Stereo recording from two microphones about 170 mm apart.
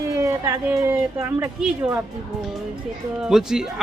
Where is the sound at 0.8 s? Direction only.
15° right (ahead or behind).